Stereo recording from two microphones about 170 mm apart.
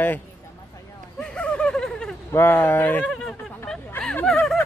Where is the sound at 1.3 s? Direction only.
5° left (ahead or behind).